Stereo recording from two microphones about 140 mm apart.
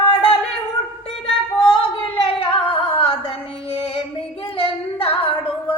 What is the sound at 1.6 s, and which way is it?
Singing, 35° left (ahead or behind).